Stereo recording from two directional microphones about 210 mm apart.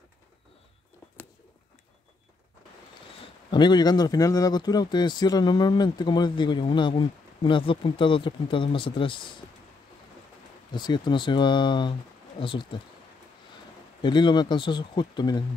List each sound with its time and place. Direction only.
3.5 s speech: 20° left (ahead or behind)
10.7 s speech: 20° left (ahead or behind)
14.0 s speech: 20° left (ahead or behind)